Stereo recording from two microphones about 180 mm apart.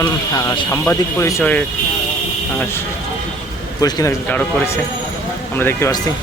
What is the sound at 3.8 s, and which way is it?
Speech, 20° left (ahead or behind).